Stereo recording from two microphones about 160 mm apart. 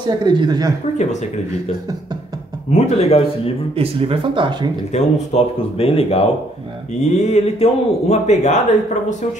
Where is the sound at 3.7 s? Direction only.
35° right (ahead or behind).